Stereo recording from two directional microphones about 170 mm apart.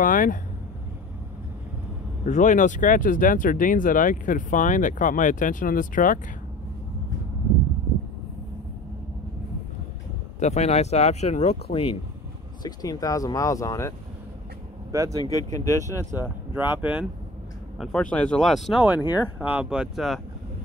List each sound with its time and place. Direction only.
0.0 s speech: 55° left (ahead or behind)
2.2 s speech: 45° left (ahead or behind)
10.4 s speech: 40° left (ahead or behind)
12.6 s speech: 20° left (ahead or behind)
14.9 s speech: 20° right (ahead or behind)
15.2 s speech: 20° left (ahead or behind)
16.1 s speech: 10° right (ahead or behind)
17.7 s speech: 5° left (ahead or behind)